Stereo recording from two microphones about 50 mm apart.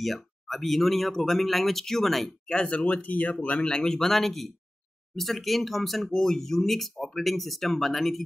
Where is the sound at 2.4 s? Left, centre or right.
Left.